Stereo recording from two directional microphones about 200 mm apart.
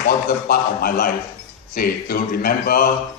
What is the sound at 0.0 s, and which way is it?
A man's voice, 50° left (ahead or behind).